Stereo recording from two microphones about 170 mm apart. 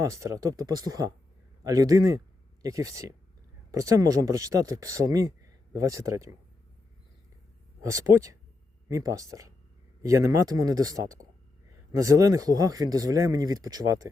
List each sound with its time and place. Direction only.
0.0 s speech: 20° right (ahead or behind)
7.8 s speech: 20° right (ahead or behind)